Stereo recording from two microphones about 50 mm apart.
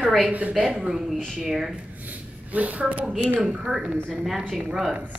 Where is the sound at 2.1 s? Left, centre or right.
Right.